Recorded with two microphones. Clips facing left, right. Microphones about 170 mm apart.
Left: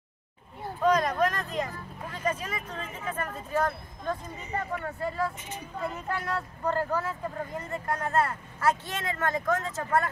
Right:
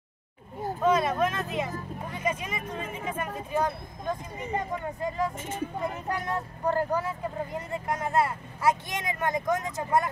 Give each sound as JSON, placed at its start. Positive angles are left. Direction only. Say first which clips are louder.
{"t": 0.7, "sound": "vehicle", "louder": "even", "side_deg": -5}
{"t": 2.0, "sound": "speech", "louder": "left 1 dB", "side_deg": -10}
{"t": 5.4, "sound": "speech", "louder": "right 8 dB", "side_deg": -50}
{"t": 5.8, "sound": "speech", "louder": "left 3 dB", "side_deg": -15}